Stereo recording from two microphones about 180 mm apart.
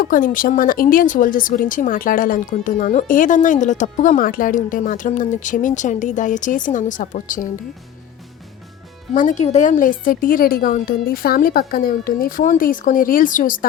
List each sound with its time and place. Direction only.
0.0 s speech: 50° left (ahead or behind)
9.1 s speech: 45° left (ahead or behind)